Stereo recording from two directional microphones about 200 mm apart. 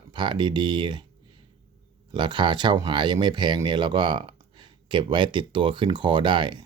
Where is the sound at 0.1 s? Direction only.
20° right (ahead or behind).